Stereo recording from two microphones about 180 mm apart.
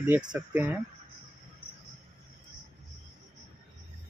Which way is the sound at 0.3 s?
10° right (ahead or behind).